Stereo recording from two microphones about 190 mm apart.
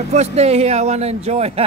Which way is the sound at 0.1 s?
35° right (ahead or behind).